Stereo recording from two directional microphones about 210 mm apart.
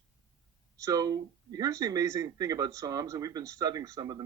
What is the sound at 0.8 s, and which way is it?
Speech, 15° right (ahead or behind).